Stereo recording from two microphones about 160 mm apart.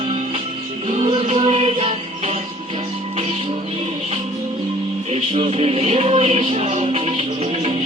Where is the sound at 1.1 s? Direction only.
35° right (ahead or behind).